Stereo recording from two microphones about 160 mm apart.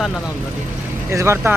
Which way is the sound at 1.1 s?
15° right (ahead or behind).